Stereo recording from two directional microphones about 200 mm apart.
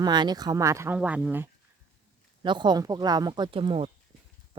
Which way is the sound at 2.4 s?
20° right (ahead or behind).